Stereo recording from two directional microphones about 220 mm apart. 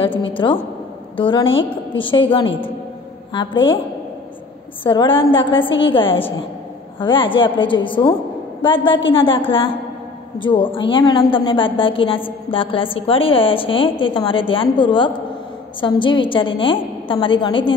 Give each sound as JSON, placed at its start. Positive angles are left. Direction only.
{"t": 0.4, "sound": "a woman's voice", "side_deg": 20}
{"t": 4.8, "sound": "a woman's voice", "side_deg": 25}